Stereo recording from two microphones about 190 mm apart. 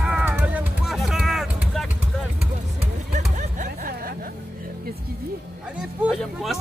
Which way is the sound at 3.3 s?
45° right (ahead or behind).